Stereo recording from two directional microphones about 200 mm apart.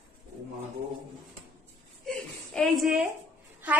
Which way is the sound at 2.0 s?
5° left (ahead or behind).